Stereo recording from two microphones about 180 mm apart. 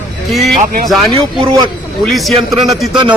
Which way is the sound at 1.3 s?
30° right (ahead or behind).